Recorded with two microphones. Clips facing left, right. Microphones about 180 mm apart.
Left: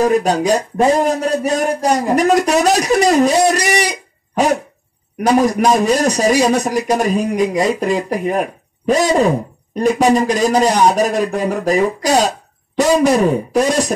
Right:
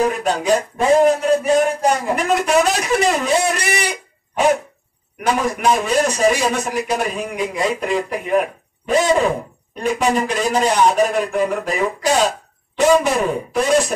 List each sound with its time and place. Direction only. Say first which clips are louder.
0.0 s speech: left 5 dB; 40° left (ahead or behind)
5.2 s speech: left 5 dB; 35° left (ahead or behind)